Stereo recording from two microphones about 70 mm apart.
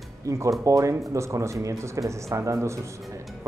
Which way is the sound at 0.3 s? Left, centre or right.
Right.